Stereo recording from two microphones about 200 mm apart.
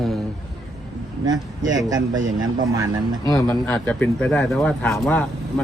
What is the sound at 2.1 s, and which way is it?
Speech, 80° right.